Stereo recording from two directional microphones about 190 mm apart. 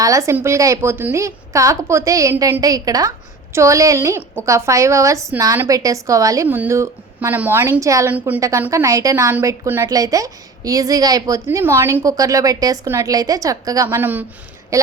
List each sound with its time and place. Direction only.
0.0 s a woman's voice: 15° right (ahead or behind)